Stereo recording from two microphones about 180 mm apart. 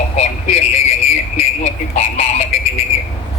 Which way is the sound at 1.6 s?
35° left (ahead or behind).